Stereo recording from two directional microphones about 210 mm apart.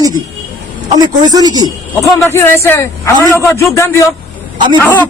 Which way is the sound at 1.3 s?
20° right (ahead or behind).